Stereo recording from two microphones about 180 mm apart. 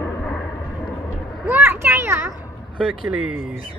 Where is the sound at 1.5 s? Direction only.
10° right (ahead or behind).